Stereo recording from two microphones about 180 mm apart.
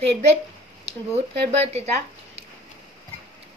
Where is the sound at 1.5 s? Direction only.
35° right (ahead or behind).